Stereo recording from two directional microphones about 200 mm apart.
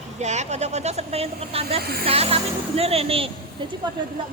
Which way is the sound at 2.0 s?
30° right (ahead or behind).